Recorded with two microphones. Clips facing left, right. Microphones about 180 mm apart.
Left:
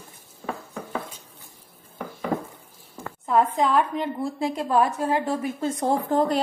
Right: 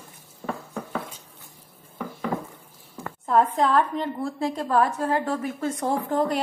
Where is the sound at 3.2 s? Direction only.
5° left (ahead or behind).